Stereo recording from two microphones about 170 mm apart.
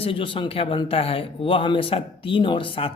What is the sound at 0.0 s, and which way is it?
Speech, 30° left (ahead or behind).